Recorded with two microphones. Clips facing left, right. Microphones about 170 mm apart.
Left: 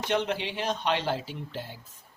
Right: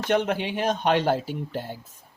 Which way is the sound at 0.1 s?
50° right (ahead or behind).